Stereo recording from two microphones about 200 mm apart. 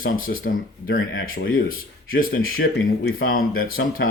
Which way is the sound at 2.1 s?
45° left (ahead or behind).